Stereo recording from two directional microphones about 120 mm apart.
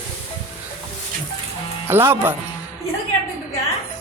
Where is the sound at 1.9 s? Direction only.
20° right (ahead or behind).